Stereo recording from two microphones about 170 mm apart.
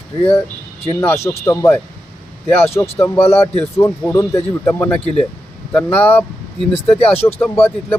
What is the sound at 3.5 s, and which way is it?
Speech, 10° left (ahead or behind).